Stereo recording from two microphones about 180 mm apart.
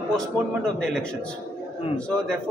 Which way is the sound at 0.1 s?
5° left (ahead or behind).